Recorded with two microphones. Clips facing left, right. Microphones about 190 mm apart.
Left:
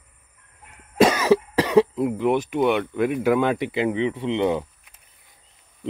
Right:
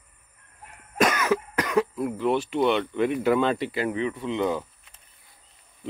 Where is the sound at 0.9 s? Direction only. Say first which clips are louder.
Left 6 dB; 30° left (ahead or behind).